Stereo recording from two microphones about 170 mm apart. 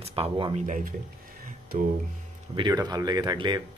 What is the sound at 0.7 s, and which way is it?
Speech, 50° right (ahead or behind).